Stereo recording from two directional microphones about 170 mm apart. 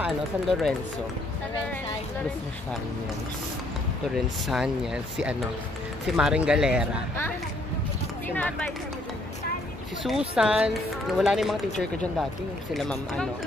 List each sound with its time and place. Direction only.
0.0 s speech: centre (ahead or behind)
4.1 s speech: centre (ahead or behind)
8.3 s speech: 10° left (ahead or behind)
10.0 s speech: 5° right (ahead or behind)